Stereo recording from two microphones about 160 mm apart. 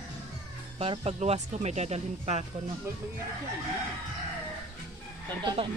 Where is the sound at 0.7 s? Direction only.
40° right (ahead or behind).